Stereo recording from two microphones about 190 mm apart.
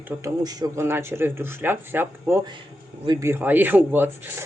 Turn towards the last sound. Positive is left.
turn(degrees=-10)  # may be behind; listen again after turning